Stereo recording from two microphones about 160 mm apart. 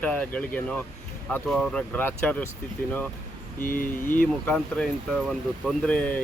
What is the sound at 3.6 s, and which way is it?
Speech, 60° left (ahead or behind).